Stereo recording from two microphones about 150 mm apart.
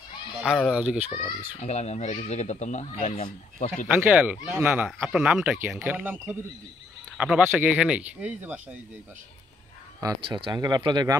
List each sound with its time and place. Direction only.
0.7 s speech: 5° right (ahead or behind)
1.6 s speech: 45° left (ahead or behind)
3.9 s speech: 10° right (ahead or behind)
9.9 s speech: 25° right (ahead or behind)